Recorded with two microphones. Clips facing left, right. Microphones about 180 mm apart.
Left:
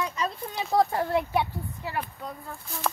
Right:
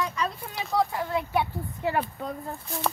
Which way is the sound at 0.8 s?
45° left (ahead or behind).